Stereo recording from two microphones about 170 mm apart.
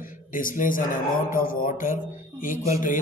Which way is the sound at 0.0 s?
55° left (ahead or behind).